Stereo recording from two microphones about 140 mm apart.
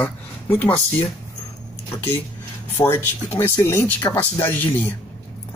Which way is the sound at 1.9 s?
15° left (ahead or behind).